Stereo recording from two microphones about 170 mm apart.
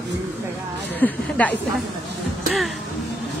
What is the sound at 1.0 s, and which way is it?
Speech, 10° left (ahead or behind).